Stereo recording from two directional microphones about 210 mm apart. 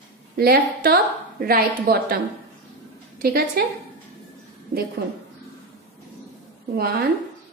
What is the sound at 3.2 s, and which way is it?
Speech, 45° right (ahead or behind).